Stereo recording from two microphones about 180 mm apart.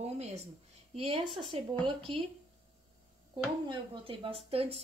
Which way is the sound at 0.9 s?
35° right (ahead or behind).